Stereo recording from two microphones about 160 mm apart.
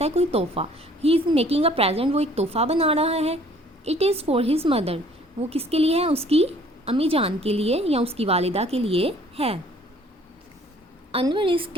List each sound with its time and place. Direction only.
0.0 s a woman's voice: 40° right (ahead or behind)
11.1 s a woman's voice: 30° right (ahead or behind)